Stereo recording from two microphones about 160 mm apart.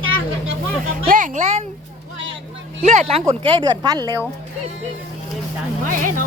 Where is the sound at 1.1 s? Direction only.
50° right (ahead or behind).